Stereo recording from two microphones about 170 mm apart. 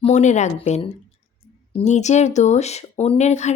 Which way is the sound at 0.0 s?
45° left (ahead or behind).